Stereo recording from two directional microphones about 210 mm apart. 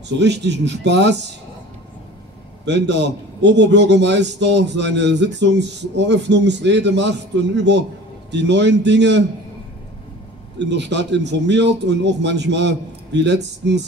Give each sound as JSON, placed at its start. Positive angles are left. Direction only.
{"t": 0.2, "sound": "a man's voice", "side_deg": -55}
{"t": 2.6, "sound": "a man's voice", "side_deg": -55}
{"t": 10.6, "sound": "a man's voice", "side_deg": -55}